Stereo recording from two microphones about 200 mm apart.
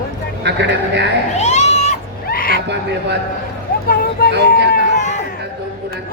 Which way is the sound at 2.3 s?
45° left (ahead or behind).